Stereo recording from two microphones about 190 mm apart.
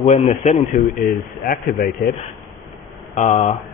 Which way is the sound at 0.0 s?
35° left (ahead or behind).